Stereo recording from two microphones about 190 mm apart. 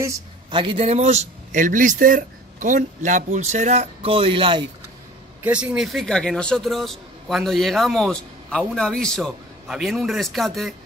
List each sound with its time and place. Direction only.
0.0 s a man's voice: 20° right (ahead or behind)
5.4 s a man's voice: 5° right (ahead or behind)